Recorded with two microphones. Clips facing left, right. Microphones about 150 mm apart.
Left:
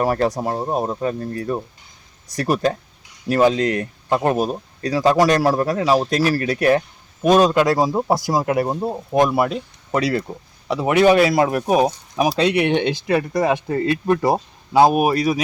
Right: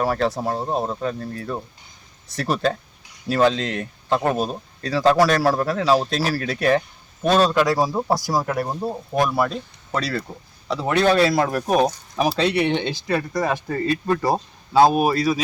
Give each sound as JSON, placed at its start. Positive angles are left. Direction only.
{"t": 0.0, "sound": "speech", "side_deg": 15}
{"t": 3.6, "sound": "speech", "side_deg": 55}
{"t": 4.1, "sound": "speech", "side_deg": 15}